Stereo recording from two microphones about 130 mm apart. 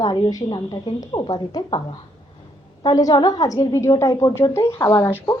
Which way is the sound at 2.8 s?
30° left (ahead or behind).